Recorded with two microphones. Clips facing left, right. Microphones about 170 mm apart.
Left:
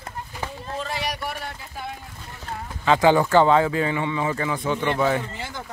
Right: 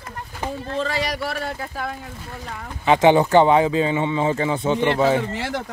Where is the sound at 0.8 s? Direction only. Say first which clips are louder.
Right 4 dB; 90° right.